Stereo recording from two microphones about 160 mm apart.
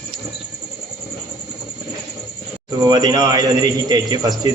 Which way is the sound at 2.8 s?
25° right (ahead or behind).